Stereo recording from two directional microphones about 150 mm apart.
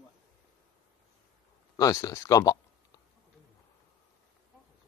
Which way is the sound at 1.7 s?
25° left (ahead or behind).